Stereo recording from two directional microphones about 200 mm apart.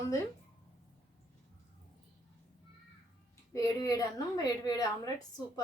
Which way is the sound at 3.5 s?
15° left (ahead or behind).